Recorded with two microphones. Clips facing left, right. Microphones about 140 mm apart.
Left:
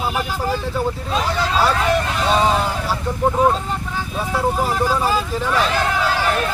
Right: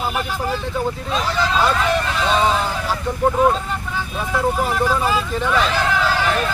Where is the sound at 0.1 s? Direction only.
5° left (ahead or behind).